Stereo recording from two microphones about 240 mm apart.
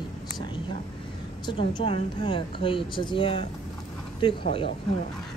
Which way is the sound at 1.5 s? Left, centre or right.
Left.